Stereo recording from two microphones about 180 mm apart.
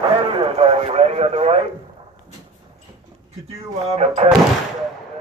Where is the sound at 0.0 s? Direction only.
30° right (ahead or behind).